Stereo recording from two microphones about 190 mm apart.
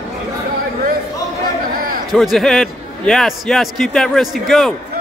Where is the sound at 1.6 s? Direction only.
50° right (ahead or behind).